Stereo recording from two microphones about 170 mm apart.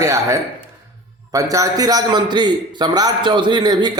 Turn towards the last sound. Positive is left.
turn(degrees=-25)  # may be behind; listen again after turning